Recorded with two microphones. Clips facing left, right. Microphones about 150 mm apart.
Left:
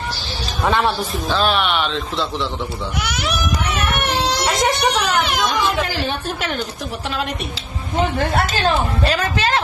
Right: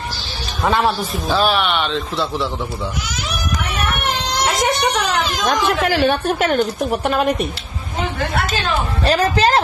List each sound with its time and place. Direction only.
0.7 s a man's voice: centre (ahead or behind)
4.5 s music: centre (ahead or behind)
5.5 s a woman's voice: 70° right (ahead or behind)
9.0 s speech: 40° right (ahead or behind)